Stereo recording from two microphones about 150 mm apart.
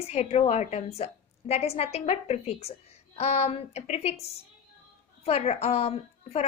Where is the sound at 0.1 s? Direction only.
45° left (ahead or behind).